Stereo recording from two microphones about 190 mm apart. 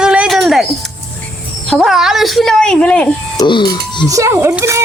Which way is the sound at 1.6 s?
Centre (ahead or behind).